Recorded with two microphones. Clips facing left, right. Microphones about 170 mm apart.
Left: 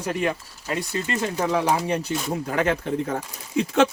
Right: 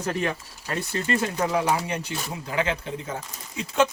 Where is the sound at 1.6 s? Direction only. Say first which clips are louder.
Left 3 dB; 35° left (ahead or behind).